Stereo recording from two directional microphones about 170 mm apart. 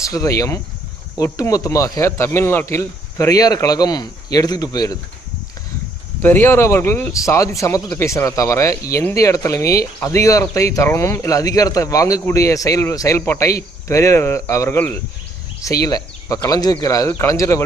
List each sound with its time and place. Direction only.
0.0 s speech: 20° left (ahead or behind)
6.2 s speech: 10° left (ahead or behind)